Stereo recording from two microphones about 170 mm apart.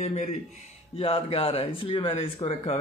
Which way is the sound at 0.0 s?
40° left (ahead or behind).